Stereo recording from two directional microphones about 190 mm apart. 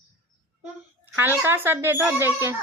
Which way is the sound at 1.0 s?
10° right (ahead or behind).